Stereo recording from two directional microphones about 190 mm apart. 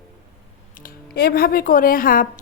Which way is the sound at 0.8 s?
50° left (ahead or behind).